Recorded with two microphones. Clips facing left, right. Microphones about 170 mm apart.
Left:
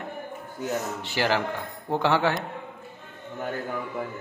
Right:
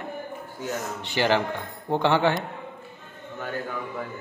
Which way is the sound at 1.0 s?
5° left (ahead or behind).